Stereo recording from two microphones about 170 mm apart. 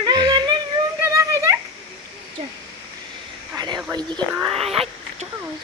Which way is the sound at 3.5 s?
25° right (ahead or behind).